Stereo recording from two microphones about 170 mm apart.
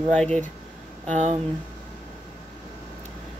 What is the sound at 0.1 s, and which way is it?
Speech, 5° left (ahead or behind).